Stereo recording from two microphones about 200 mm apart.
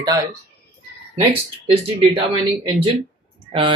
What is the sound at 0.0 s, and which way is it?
Speech, 20° right (ahead or behind).